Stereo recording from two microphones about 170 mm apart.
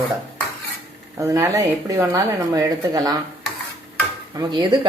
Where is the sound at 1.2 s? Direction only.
20° right (ahead or behind).